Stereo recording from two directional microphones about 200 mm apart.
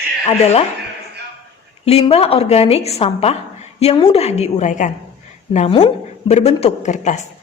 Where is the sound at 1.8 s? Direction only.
30° left (ahead or behind).